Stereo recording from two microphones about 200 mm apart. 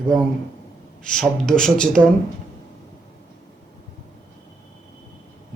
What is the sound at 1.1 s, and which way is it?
Speech, 5° left (ahead or behind).